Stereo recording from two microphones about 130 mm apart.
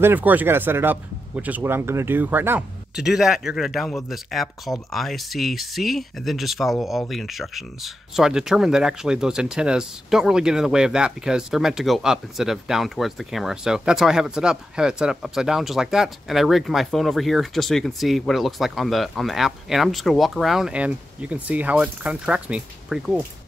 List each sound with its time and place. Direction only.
0.0 s speech: 15° right (ahead or behind)
3.0 s speech: 5° right (ahead or behind)